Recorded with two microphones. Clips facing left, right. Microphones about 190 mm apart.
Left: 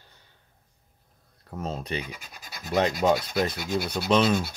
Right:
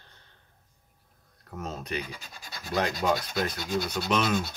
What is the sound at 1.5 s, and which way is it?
Speech, 30° left (ahead or behind).